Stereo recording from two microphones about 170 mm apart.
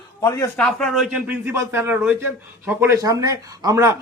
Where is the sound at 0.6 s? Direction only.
Centre (ahead or behind).